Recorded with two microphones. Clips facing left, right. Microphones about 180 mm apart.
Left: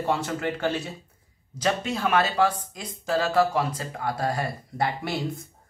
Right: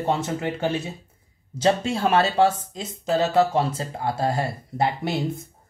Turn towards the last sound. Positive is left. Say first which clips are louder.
# right 3 dB
turn(degrees=-20)  # may be behind; listen again after turning